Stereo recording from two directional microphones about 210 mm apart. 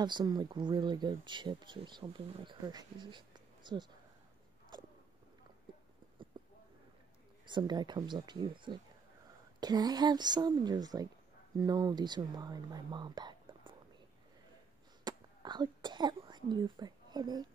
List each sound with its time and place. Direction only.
0.0 s speech: 20° right (ahead or behind)
6.4 s a sound: 20° right (ahead or behind)
7.4 s speech: 20° right (ahead or behind)
15.0 s speech: 20° right (ahead or behind)